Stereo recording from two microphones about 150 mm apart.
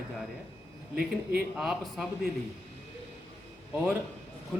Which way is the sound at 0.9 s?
90° right.